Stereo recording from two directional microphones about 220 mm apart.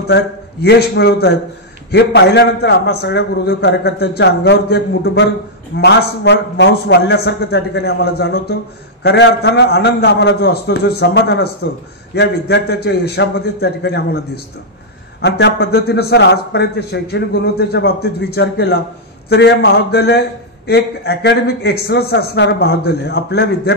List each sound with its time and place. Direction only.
0.1 s a man's voice: 50° left (ahead or behind)